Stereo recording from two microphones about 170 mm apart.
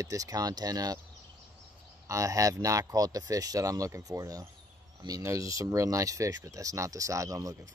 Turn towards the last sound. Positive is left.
turn(degrees=-20)  # may be behind; listen again after turning